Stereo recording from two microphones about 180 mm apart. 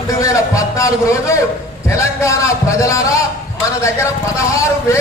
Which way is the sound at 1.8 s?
15° left (ahead or behind).